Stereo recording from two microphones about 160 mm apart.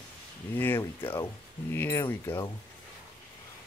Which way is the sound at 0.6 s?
15° left (ahead or behind).